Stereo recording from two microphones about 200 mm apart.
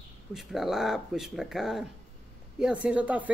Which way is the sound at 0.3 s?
Centre (ahead or behind).